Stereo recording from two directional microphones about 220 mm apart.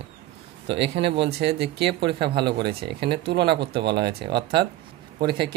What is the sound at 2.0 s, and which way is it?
Speech, 20° right (ahead or behind).